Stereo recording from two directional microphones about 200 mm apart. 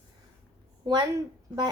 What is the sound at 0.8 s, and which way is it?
Speech, 20° right (ahead or behind).